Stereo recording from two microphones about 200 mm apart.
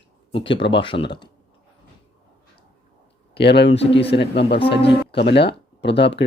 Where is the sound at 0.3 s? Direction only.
25° left (ahead or behind).